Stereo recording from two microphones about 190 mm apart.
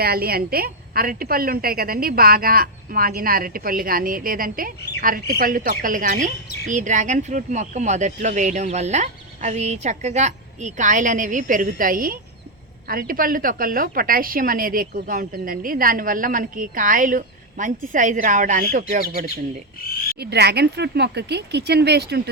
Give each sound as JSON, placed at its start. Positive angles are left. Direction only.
{"t": 0.0, "sound": "a woman's voice", "side_deg": -55}
{"t": 19.8, "sound": "frog", "side_deg": 50}
{"t": 20.1, "sound": "speech", "side_deg": -60}